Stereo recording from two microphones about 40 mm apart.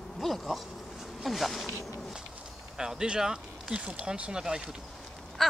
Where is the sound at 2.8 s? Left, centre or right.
Centre.